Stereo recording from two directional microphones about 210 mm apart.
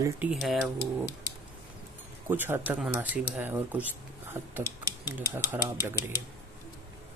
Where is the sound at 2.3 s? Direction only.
10° right (ahead or behind).